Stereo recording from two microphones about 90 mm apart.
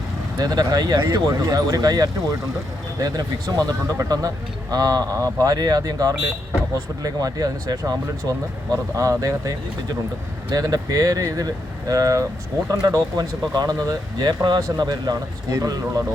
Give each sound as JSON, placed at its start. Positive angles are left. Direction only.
{"t": 0.3, "sound": "speech", "side_deg": -45}
{"t": 10.5, "sound": "speech", "side_deg": -45}